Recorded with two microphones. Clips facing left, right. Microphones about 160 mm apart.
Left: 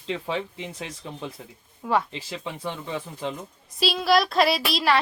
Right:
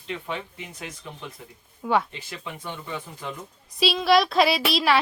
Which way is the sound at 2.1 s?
30° left (ahead or behind).